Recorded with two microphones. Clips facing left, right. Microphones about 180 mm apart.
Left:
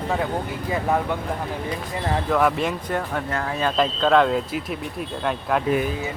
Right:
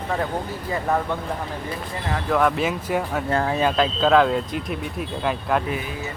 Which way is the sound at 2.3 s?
Centre (ahead or behind).